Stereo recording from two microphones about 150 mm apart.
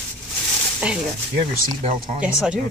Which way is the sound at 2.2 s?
5° right (ahead or behind).